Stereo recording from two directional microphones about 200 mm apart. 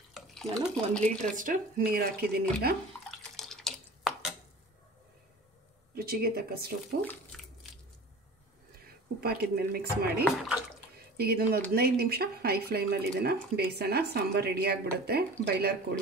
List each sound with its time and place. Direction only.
0.1 s a sound: centre (ahead or behind)
0.9 s speech: 5° left (ahead or behind)
1.3 s speech: 40° right (ahead or behind)
3.3 s a sound: centre (ahead or behind)
5.9 s speech: 50° right (ahead or behind)
8.8 s a woman's voice: 50° right (ahead or behind)
10.2 s speech: centre (ahead or behind)
11.1 s speech: 50° right (ahead or behind)